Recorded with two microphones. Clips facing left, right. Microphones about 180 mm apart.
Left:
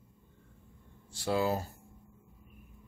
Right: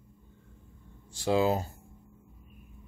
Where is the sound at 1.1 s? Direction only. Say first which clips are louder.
Right 4 dB; 20° right (ahead or behind).